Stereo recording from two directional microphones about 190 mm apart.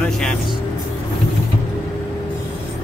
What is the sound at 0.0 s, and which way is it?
Vehicle, 5° left (ahead or behind).